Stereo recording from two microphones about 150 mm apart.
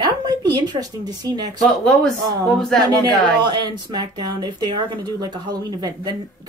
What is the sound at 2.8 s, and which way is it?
A woman's voice, 25° right (ahead or behind).